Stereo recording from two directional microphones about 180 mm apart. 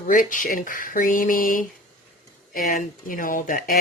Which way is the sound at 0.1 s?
50° left (ahead or behind).